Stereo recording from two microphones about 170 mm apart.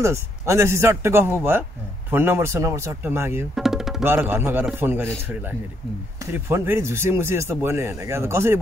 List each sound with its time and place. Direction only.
0.0 s speech: 15° right (ahead or behind)
3.5 s music: centre (ahead or behind)
4.0 s speech: 10° right (ahead or behind)
6.3 s speech: 15° right (ahead or behind)